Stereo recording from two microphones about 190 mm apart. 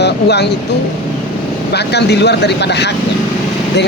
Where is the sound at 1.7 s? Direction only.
60° left (ahead or behind).